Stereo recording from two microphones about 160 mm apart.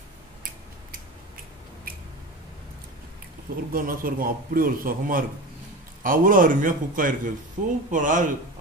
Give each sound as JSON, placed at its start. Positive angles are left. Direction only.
{"t": 3.7, "sound": "a man's voice", "side_deg": -60}